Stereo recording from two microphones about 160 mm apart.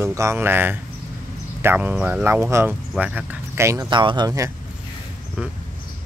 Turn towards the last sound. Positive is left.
turn(degrees=-20)  # may be behind; listen again after turning